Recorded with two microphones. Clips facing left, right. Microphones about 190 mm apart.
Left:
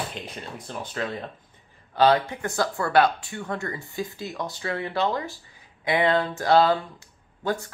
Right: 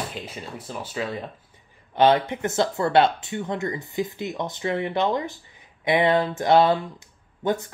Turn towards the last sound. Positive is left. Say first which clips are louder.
# right 3 dB
turn(degrees=-20)  # may be behind; listen again after turning